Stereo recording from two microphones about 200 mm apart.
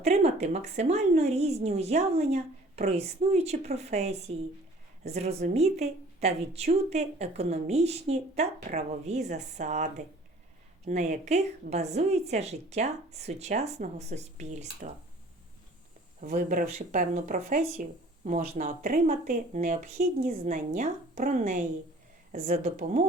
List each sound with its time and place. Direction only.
0.0 s a woman's voice: 30° right (ahead or behind)
16.2 s a woman's voice: 40° right (ahead or behind)